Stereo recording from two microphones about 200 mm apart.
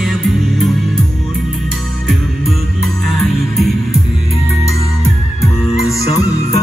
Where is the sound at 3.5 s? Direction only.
Centre (ahead or behind).